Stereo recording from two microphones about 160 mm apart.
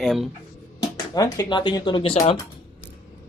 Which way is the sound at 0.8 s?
20° left (ahead or behind).